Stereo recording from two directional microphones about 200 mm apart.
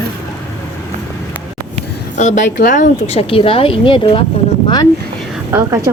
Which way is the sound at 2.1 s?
35° left (ahead or behind).